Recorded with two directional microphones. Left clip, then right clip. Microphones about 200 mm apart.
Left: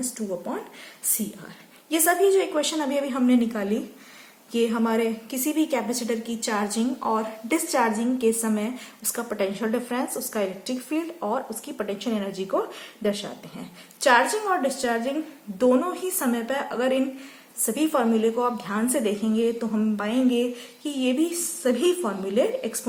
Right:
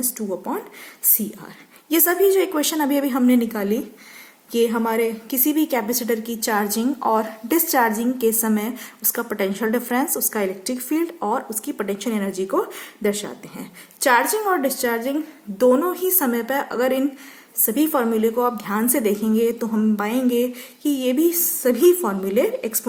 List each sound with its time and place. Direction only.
1.2 s a woman's voice: 45° right (ahead or behind)